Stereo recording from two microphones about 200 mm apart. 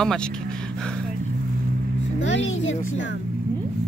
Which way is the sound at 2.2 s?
70° left (ahead or behind).